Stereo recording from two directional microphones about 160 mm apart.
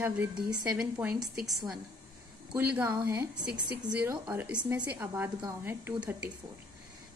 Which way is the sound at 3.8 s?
25° right (ahead or behind).